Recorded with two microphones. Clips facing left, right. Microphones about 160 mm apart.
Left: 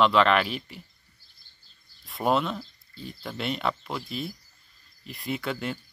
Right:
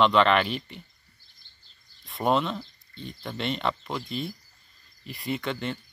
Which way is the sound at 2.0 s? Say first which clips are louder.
Even; 5° left (ahead or behind).